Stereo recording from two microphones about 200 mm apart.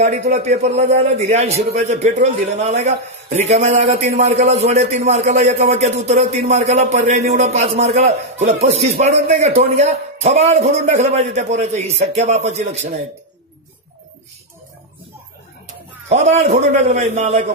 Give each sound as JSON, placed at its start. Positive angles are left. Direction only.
{"t": 0.3, "sound": "a man's voice", "side_deg": -35}
{"t": 16.1, "sound": "a man's voice", "side_deg": -35}